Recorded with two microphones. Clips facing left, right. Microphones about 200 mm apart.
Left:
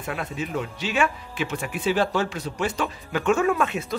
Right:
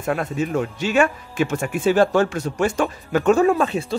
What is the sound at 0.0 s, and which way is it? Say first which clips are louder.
Speech: right 7 dB; 45° right (ahead or behind).